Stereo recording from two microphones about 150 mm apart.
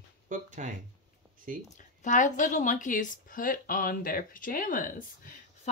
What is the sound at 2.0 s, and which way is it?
Speech, 55° left (ahead or behind).